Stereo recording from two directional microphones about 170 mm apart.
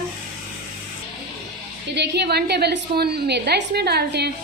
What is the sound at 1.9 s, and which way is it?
A woman's voice, 75° right (ahead or behind).